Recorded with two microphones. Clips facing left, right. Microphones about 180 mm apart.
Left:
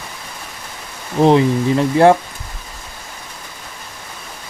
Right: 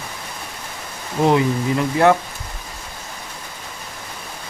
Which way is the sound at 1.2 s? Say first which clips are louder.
Left 4 dB; 30° left (ahead or behind).